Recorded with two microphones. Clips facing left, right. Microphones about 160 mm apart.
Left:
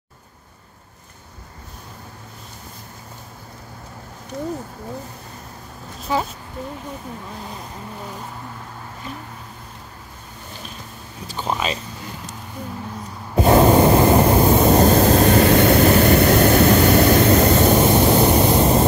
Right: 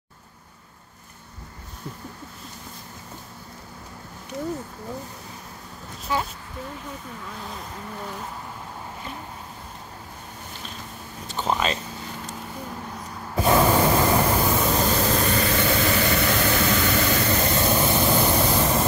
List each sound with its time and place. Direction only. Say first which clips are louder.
11.2 s speech: even; centre (ahead or behind)
13.4 s a sound: left 6 dB; 25° left (ahead or behind)
14.7 s vehicle: left 9 dB; 45° left (ahead or behind)
17.7 s vehicle: left 6 dB; 25° left (ahead or behind)